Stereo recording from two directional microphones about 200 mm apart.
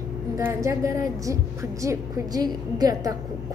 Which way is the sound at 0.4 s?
15° right (ahead or behind).